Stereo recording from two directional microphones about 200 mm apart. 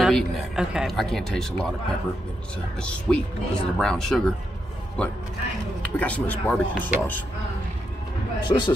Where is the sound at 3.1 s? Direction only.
5° left (ahead or behind).